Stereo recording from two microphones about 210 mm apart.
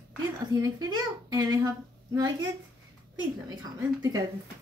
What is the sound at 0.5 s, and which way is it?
Speech, 15° right (ahead or behind).